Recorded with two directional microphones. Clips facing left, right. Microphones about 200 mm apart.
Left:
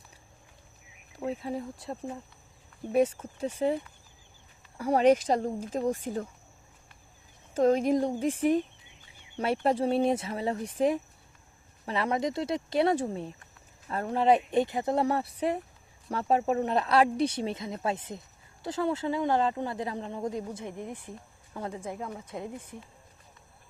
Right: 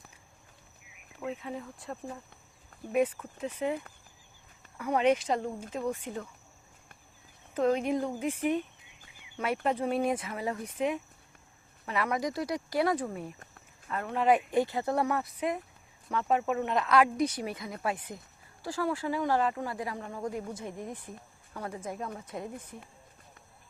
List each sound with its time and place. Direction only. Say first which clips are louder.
1.1 s speech: left 4 dB; 35° left (ahead or behind)
4.8 s speech: left 4 dB; 35° left (ahead or behind)
7.6 s speech: left 4 dB; 40° left (ahead or behind); by 22.5 s 20° left (ahead or behind)